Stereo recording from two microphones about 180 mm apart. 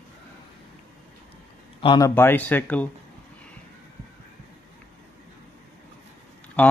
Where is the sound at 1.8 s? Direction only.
25° left (ahead or behind).